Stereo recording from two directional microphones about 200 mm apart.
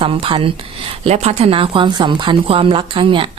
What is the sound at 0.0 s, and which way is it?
A woman's voice, 25° right (ahead or behind).